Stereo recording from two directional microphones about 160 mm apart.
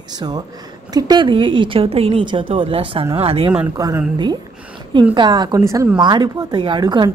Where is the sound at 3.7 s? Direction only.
20° right (ahead or behind).